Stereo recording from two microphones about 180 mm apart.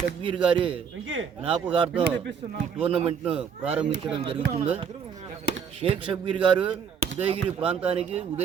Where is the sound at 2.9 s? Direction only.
35° right (ahead or behind).